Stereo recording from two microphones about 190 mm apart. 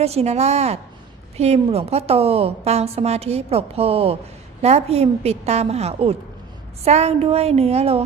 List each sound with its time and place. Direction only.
0.0 s a woman's voice: 35° right (ahead or behind)